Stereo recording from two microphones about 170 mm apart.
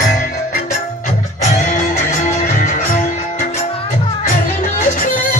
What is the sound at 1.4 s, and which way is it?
Music, 45° left (ahead or behind).